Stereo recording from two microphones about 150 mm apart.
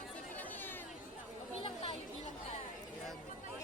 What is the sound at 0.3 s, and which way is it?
Chatter, 10° left (ahead or behind).